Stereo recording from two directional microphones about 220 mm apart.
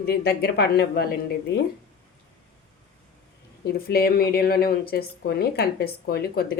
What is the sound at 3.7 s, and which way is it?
A woman's voice, 45° left (ahead or behind).